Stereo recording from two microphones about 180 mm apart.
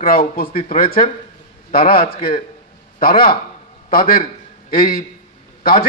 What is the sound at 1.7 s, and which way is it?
A man's voice, 55° left (ahead or behind).